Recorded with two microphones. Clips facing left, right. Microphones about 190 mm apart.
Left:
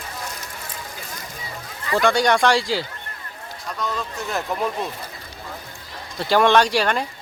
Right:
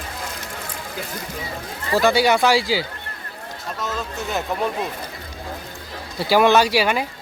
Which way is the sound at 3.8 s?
5° right (ahead or behind).